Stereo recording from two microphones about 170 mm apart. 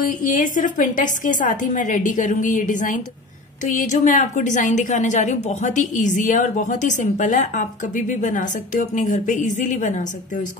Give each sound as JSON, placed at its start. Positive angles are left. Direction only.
{"t": 0.0, "sound": "a woman's voice", "side_deg": 50}